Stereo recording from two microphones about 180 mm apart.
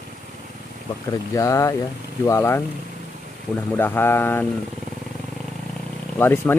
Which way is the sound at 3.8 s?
10° left (ahead or behind).